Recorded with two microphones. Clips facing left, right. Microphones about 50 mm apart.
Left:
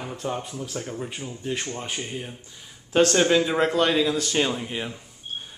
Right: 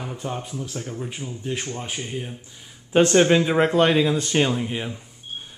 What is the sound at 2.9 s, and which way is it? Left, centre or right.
A man's voice, centre.